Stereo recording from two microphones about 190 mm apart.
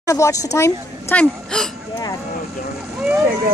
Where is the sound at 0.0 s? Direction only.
15° left (ahead or behind).